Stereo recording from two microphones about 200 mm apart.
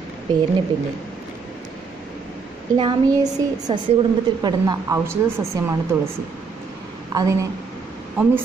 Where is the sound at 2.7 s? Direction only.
20° right (ahead or behind).